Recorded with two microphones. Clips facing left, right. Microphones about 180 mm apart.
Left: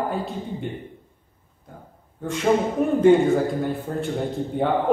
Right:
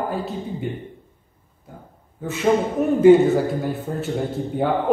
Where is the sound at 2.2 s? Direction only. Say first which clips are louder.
Right 2 dB; 5° right (ahead or behind).